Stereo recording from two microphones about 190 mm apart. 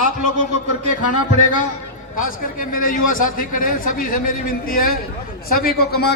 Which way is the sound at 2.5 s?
45° left (ahead or behind).